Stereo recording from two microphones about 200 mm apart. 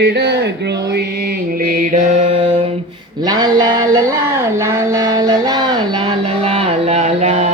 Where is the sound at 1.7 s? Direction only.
40° right (ahead or behind).